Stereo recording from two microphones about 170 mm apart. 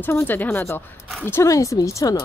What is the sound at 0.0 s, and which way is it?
Speech, 10° left (ahead or behind).